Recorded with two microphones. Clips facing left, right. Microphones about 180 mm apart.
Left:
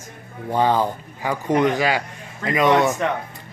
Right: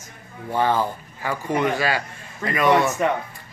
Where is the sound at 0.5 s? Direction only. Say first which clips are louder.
Left 2 dB; 15° left (ahead or behind).